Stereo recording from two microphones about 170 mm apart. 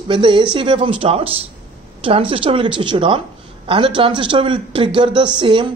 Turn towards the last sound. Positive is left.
turn(degrees=-30)  # may be behind; listen again after turning